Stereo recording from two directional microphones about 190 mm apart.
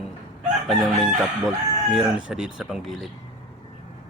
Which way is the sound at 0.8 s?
Centre (ahead or behind).